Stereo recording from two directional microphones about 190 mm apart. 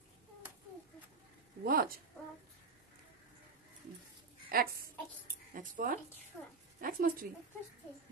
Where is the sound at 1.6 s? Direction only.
50° right (ahead or behind).